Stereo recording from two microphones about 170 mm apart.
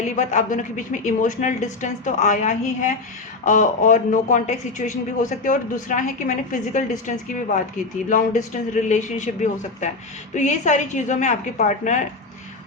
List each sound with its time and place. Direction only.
0.0 s speech: 45° left (ahead or behind)